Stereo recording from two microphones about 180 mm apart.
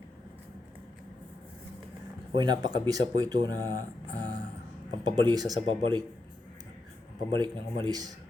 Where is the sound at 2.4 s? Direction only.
25° right (ahead or behind).